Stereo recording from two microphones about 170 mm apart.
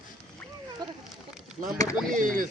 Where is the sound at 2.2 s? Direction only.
50° right (ahead or behind).